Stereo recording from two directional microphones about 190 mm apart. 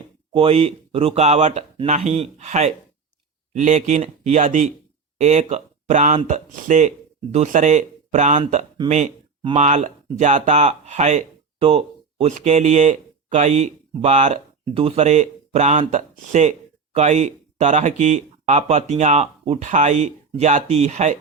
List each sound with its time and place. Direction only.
0.3 s speech: 30° right (ahead or behind)